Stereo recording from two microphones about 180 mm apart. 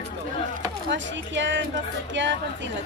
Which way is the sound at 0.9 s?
90° right.